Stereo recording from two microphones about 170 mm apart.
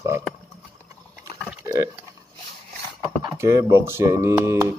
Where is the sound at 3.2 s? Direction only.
20° right (ahead or behind).